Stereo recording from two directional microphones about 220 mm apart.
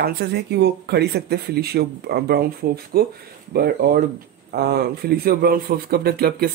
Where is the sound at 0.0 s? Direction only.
45° right (ahead or behind).